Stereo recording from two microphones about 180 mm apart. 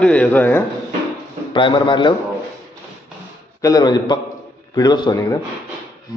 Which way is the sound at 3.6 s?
20° left (ahead or behind).